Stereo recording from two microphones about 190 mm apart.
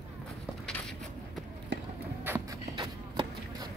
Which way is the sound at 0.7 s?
5° left (ahead or behind).